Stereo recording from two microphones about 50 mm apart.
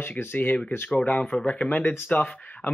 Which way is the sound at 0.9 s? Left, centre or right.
Centre.